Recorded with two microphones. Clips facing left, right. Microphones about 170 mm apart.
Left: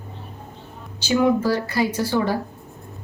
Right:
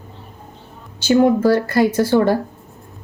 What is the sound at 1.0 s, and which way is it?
A woman's voice, 50° right (ahead or behind).